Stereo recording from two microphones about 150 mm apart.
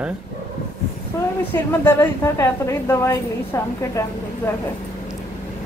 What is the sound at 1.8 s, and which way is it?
A woman's voice, 15° left (ahead or behind).